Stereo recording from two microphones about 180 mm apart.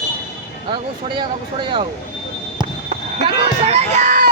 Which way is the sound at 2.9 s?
35° right (ahead or behind).